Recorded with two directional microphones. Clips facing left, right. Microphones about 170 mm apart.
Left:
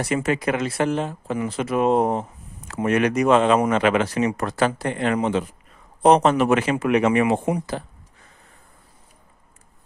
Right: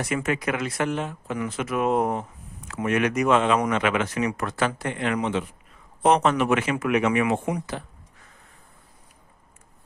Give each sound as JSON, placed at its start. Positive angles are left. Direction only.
{"t": 0.0, "sound": "speech", "side_deg": 30}